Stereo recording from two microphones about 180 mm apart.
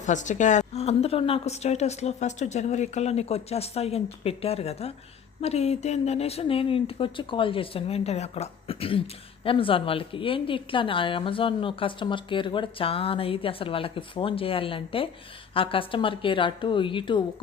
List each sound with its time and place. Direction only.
0.0 s a woman's voice: 45° left (ahead or behind); by 17.2 s 25° left (ahead or behind)